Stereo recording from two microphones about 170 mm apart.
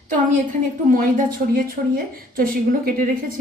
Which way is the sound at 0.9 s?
55° right (ahead or behind).